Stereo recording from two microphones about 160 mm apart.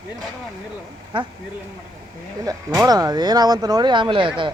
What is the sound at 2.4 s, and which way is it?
Speech, 20° right (ahead or behind).